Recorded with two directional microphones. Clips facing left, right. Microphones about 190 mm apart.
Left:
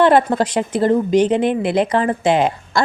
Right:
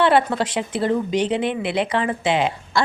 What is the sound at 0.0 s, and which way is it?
Speech, 45° left (ahead or behind).